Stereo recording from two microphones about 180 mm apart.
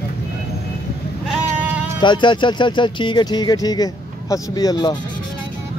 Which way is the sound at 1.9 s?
25° left (ahead or behind).